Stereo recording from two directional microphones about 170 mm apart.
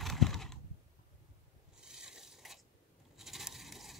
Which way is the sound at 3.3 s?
Centre (ahead or behind).